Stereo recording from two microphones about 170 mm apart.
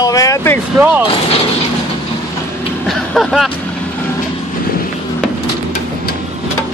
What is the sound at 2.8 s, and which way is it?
Speech, centre (ahead or behind).